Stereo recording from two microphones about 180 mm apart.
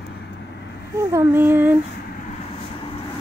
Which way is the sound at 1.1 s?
15° right (ahead or behind).